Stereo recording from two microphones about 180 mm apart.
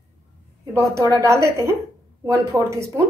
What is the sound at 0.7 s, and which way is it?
A woman's voice, 15° right (ahead or behind).